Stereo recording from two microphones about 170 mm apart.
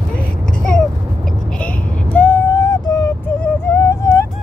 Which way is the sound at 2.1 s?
10° left (ahead or behind).